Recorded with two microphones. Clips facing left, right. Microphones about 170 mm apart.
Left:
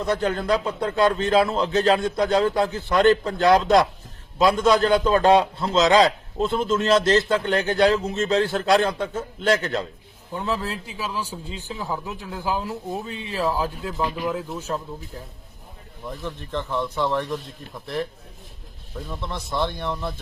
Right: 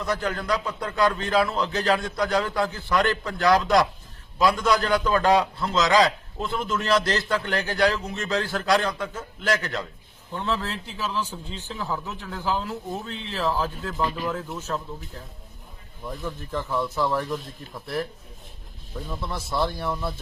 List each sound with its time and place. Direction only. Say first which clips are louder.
0.0 s a man's voice: left 4 dB; 30° left (ahead or behind)
10.3 s a man's voice: left 1 dB; 10° left (ahead or behind)
16.0 s speech: even; 5° right (ahead or behind)
19.1 s speech: even; 5° right (ahead or behind)